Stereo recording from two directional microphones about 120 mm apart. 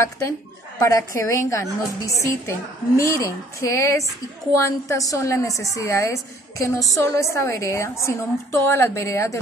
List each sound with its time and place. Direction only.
0.7 s a woman's voice: 25° left (ahead or behind)